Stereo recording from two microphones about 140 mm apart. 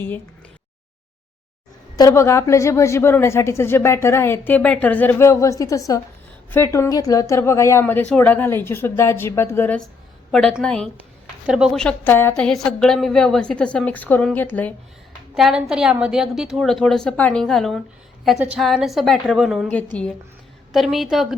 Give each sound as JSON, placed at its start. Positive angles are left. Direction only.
{"t": 2.0, "sound": "a woman's voice", "side_deg": 20}
{"t": 10.3, "sound": "a woman's voice", "side_deg": 5}
{"t": 15.4, "sound": "a woman's voice", "side_deg": 0}